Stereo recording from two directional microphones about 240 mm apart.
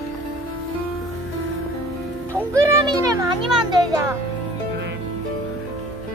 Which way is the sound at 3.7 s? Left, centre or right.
Centre.